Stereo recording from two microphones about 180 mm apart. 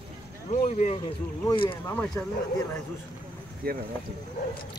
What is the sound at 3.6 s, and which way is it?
Speech, 55° right (ahead or behind).